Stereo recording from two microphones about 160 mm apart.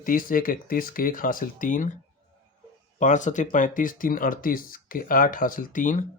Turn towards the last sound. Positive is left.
turn(degrees=55)  # may be behind; listen again after turning